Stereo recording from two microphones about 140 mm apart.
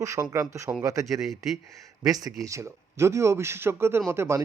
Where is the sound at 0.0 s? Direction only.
20° right (ahead or behind).